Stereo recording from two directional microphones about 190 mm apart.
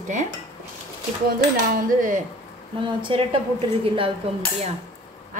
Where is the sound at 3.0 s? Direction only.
25° right (ahead or behind).